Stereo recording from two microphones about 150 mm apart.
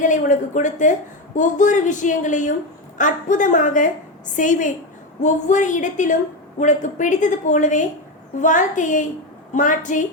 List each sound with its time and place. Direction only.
0.0 s a woman's voice: 60° left (ahead or behind)